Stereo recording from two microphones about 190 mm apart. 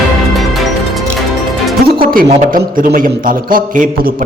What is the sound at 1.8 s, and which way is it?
A man's voice, 50° right (ahead or behind).